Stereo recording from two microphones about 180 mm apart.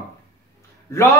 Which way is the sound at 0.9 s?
15° left (ahead or behind).